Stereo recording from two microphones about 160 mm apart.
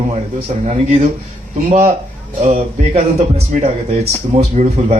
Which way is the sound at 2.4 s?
40° right (ahead or behind).